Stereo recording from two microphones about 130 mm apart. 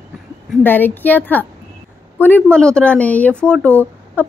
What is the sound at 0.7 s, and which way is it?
A woman's voice, 15° left (ahead or behind).